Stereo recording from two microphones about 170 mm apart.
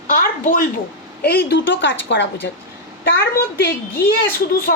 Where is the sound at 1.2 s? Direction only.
65° left (ahead or behind); by 2.2 s 90° left.